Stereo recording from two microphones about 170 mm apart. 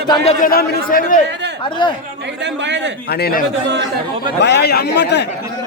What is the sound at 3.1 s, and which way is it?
Speech, 70° left (ahead or behind).